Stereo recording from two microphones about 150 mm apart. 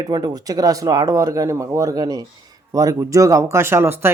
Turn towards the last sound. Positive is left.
turn(degrees=-15)  # may be behind; listen again after turning